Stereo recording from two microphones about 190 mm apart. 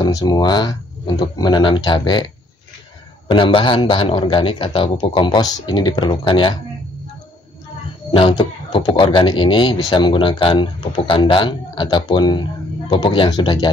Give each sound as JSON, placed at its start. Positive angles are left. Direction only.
{"t": 0.0, "sound": "speech", "side_deg": 20}
{"t": 3.3, "sound": "speech", "side_deg": 25}
{"t": 8.1, "sound": "speech", "side_deg": 30}